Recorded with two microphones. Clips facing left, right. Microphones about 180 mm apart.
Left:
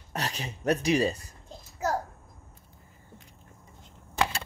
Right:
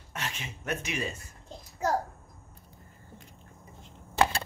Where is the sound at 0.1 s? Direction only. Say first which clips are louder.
Left 4 dB; 35° left (ahead or behind).